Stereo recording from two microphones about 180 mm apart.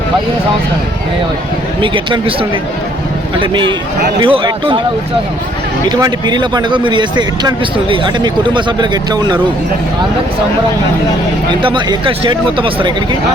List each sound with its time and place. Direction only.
1.8 s speech: 25° right (ahead or behind)
5.9 s speech: 25° right (ahead or behind)
11.6 s speech: 25° right (ahead or behind)